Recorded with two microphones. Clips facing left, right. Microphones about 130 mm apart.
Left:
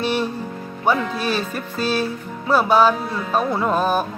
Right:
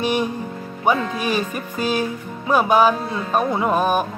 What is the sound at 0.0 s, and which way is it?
Music, 15° right (ahead or behind).